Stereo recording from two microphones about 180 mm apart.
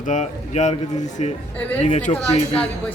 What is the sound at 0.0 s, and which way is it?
Speech, 45° left (ahead or behind).